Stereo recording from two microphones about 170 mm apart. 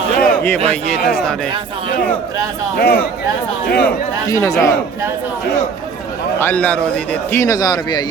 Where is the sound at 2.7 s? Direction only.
65° left (ahead or behind).